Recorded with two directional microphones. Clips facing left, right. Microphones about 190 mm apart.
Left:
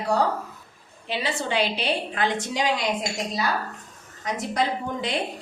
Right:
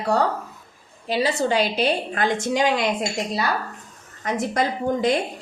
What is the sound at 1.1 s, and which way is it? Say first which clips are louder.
A woman's voice: right 6 dB; 40° right (ahead or behind).